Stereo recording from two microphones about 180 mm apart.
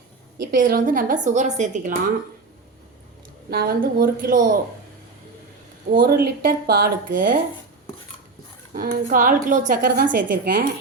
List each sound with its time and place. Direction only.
0.3 s a woman's voice: 50° right (ahead or behind)
3.5 s a woman's voice: 55° right (ahead or behind)
5.9 s a woman's voice: 55° right (ahead or behind)
8.7 s a woman's voice: 50° right (ahead or behind)